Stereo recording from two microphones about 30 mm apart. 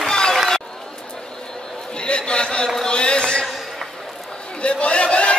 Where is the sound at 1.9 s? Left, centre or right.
Left.